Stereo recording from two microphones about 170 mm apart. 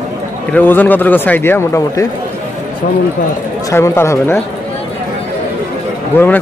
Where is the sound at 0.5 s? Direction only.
10° left (ahead or behind).